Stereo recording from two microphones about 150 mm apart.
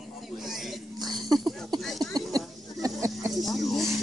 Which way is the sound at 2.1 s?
25° right (ahead or behind).